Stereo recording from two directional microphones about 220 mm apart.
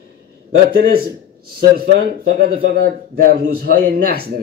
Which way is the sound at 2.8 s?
40° right (ahead or behind).